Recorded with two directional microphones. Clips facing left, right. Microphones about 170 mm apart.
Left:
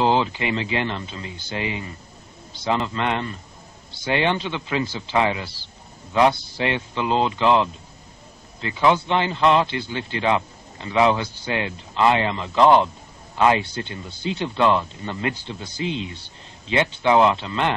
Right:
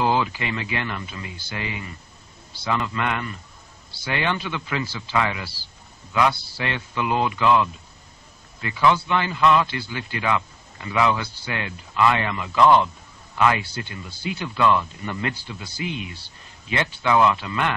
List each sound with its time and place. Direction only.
0.0 s speech: 25° left (ahead or behind)